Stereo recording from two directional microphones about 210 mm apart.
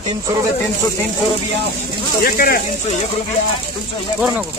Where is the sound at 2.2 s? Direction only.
45° left (ahead or behind).